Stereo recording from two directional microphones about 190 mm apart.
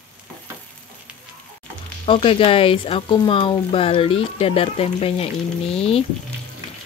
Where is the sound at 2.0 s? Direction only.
30° left (ahead or behind).